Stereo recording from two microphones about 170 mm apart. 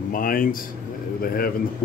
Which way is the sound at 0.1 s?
55° left (ahead or behind).